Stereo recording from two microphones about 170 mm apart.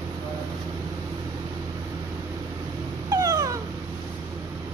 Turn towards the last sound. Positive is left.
turn(degrees=-20)  # may be behind; listen again after turning